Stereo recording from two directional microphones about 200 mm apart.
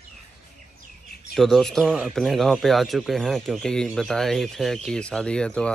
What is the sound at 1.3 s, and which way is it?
Speech, centre (ahead or behind).